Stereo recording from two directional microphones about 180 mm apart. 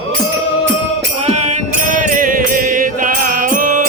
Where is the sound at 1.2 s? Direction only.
40° right (ahead or behind).